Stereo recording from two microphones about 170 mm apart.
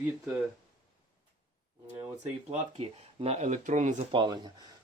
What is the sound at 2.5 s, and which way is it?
Speech, 40° right (ahead or behind).